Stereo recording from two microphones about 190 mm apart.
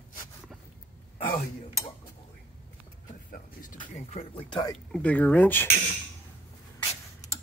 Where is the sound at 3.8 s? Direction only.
30° left (ahead or behind).